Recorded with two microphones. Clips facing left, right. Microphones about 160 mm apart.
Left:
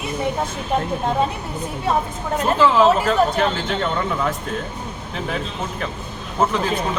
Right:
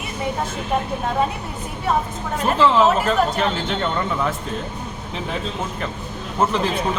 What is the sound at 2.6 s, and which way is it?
Speech, centre (ahead or behind).